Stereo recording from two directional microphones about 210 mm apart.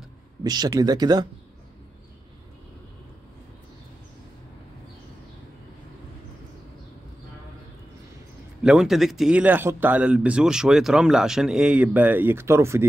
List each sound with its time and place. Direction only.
0.4 s speech: 20° right (ahead or behind)
8.6 s speech: centre (ahead or behind)